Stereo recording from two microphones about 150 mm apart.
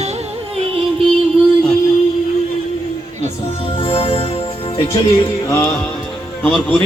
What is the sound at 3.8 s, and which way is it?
Music, 40° left (ahead or behind).